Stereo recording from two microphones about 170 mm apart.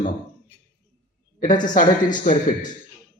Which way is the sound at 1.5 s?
25° left (ahead or behind).